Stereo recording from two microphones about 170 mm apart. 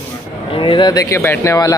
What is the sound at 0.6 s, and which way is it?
Speech, 30° left (ahead or behind).